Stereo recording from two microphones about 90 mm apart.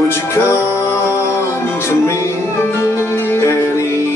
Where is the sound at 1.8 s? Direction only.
30° left (ahead or behind).